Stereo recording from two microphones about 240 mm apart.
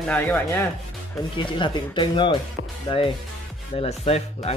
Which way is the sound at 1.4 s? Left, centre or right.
Centre.